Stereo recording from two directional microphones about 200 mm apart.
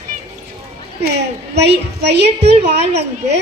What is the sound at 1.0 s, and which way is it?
A woman's voice, 55° right (ahead or behind).